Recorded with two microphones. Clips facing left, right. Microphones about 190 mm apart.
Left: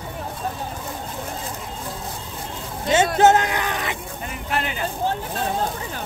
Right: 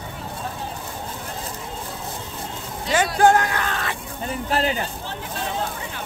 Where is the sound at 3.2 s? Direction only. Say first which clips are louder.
Right 2 dB; 20° left (ahead or behind).